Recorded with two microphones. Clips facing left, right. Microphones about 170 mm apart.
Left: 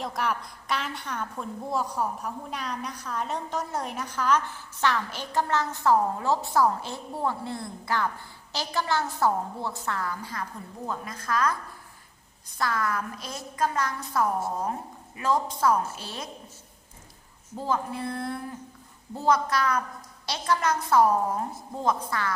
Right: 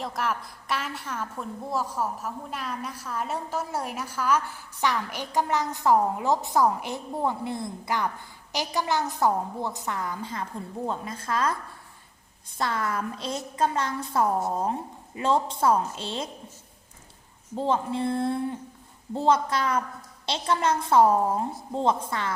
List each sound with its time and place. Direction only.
0.0 s a woman's voice: centre (ahead or behind); by 16.3 s 25° right (ahead or behind)
17.5 s a woman's voice: 25° right (ahead or behind)